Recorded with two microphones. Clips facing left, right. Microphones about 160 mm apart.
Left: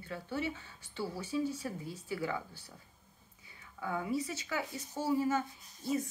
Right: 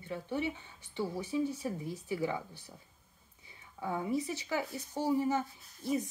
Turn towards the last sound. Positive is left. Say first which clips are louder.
# right 1 dB
turn(degrees=-20)  # may be behind; listen again after turning